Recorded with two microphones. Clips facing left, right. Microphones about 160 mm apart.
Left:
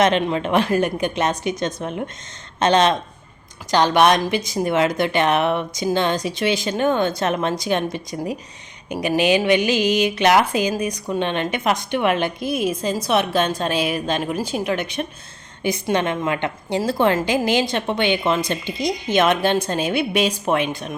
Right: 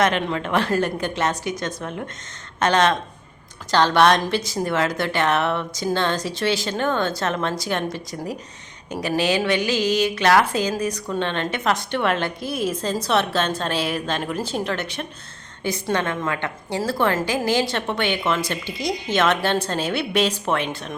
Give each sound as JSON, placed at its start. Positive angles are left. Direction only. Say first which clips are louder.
{"t": 0.0, "sound": "a woman's voice", "louder": "left 3 dB", "side_deg": 20}